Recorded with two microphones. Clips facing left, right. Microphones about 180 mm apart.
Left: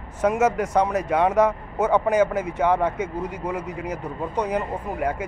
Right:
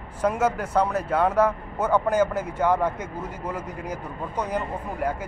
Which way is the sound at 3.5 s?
65° left (ahead or behind).